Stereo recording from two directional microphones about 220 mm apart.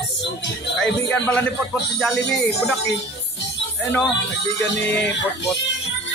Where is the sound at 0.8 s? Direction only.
5° left (ahead or behind).